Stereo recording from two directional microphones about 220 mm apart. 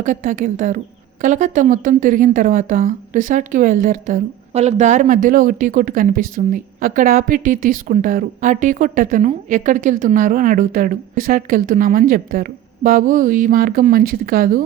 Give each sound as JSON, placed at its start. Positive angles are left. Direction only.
{"t": 0.0, "sound": "speech", "side_deg": -35}